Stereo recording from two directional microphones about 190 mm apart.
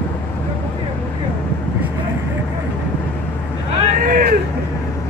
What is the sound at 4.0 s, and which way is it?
Hubbub, 45° right (ahead or behind).